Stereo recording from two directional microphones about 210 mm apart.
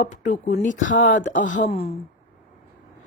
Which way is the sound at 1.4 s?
35° left (ahead or behind).